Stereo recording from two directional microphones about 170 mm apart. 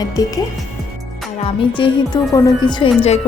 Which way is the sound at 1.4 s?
35° left (ahead or behind).